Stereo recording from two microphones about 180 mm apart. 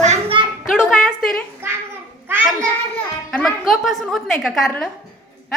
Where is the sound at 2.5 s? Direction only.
5° left (ahead or behind).